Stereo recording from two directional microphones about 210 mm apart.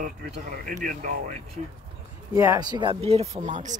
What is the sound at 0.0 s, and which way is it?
Speech, 35° right (ahead or behind).